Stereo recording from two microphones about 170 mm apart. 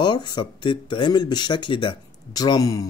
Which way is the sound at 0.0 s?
25° left (ahead or behind).